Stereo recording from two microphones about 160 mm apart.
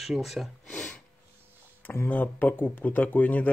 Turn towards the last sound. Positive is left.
turn(degrees=10)  # may be behind; listen again after turning